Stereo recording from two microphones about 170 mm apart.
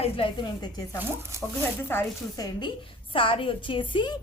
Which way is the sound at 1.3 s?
15° right (ahead or behind).